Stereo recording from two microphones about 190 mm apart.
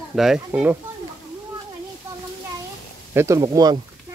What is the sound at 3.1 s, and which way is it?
Speech, 15° right (ahead or behind).